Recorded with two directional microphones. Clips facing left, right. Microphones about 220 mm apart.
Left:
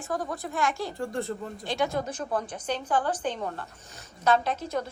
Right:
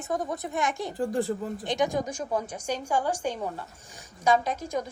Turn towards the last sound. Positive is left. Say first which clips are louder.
# even
turn(degrees=-10)  # may be behind; listen again after turning